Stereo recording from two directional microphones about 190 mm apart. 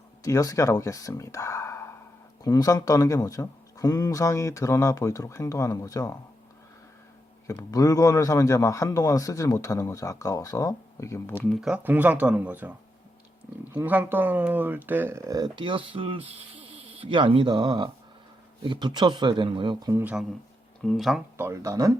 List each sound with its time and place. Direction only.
0.2 s a man's voice: 20° left (ahead or behind)
7.7 s a man's voice: 20° left (ahead or behind); by 12.7 s 10° right (ahead or behind)
13.7 s speech: 10° right (ahead or behind); by 19.9 s 25° right (ahead or behind)
19.9 s speech: 10° right (ahead or behind)
21.3 s speech: 15° right (ahead or behind)